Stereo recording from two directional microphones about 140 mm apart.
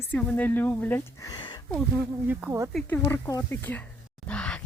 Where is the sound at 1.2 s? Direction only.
30° left (ahead or behind).